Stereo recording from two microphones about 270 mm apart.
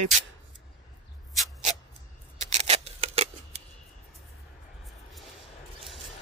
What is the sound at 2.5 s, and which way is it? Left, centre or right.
Scissors, right.